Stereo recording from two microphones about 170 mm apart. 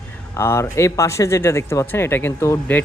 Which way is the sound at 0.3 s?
15° left (ahead or behind).